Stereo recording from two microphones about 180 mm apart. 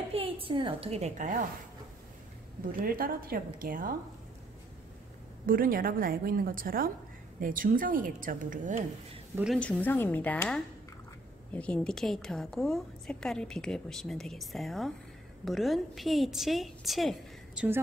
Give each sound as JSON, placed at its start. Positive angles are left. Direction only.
{"t": 0.1, "sound": "a child's voice", "side_deg": -30}
{"t": 2.6, "sound": "a woman's voice", "side_deg": -50}
{"t": 5.5, "sound": "a woman's voice", "side_deg": -50}
{"t": 9.3, "sound": "a woman's voice", "side_deg": -5}
{"t": 9.6, "sound": "a woman's voice", "side_deg": 10}